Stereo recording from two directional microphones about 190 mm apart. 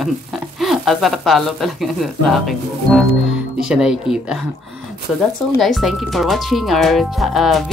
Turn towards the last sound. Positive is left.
turn(degrees=0)  # may be behind; listen again after turning